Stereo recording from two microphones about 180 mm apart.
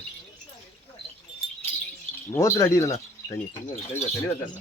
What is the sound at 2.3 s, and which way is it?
Speech, 15° left (ahead or behind).